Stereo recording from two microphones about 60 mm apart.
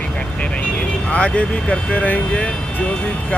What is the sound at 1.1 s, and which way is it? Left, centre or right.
Speech, left.